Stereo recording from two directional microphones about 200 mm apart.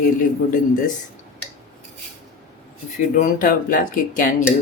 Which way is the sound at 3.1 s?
45° left (ahead or behind).